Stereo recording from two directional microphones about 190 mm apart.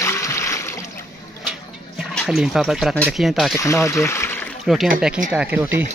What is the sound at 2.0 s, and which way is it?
Speech, centre (ahead or behind).